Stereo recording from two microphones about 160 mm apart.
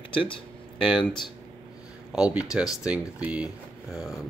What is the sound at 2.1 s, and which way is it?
Speech, 5° right (ahead or behind).